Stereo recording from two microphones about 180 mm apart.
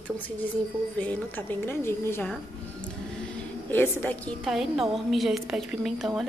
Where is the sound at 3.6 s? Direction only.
10° left (ahead or behind).